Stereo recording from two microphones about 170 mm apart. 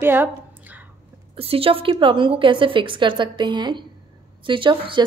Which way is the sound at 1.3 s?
35° right (ahead or behind).